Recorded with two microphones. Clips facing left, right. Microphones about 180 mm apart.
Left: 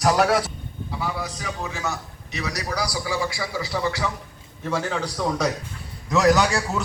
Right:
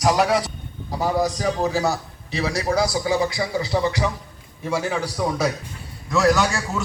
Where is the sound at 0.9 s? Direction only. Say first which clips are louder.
Right 8 dB; 40° right (ahead or behind); by 5.5 s 10° right (ahead or behind).